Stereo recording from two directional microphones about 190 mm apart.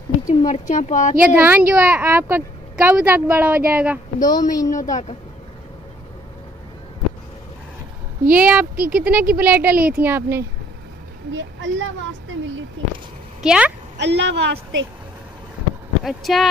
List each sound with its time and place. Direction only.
0.3 s speech: 35° left (ahead or behind)
1.2 s a woman's voice: 10° right (ahead or behind)
4.2 s a woman's voice: 20° left (ahead or behind)
4.6 s speech: 40° left (ahead or behind)
8.3 s a woman's voice: 5° right (ahead or behind)
8.7 s speech: 50° right (ahead or behind)
9.3 s a woman's voice: 10° right (ahead or behind)
11.3 s a woman's voice: 85° right
13.4 s speech: 5° right (ahead or behind)
13.9 s a woman's voice: 65° right (ahead or behind)
16.0 s speech: centre (ahead or behind)